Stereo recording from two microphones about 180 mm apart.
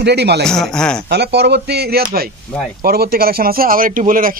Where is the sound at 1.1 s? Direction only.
65° right (ahead or behind).